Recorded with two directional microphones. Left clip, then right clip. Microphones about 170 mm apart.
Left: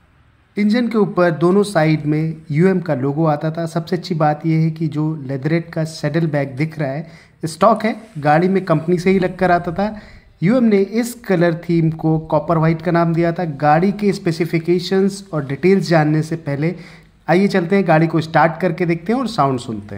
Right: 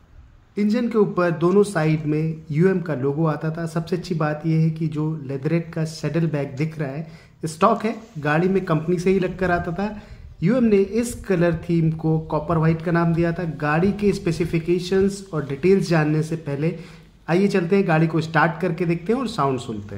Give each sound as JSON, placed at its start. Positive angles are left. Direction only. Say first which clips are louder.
{"t": 0.6, "sound": "speech", "louder": "left 3 dB", "side_deg": 30}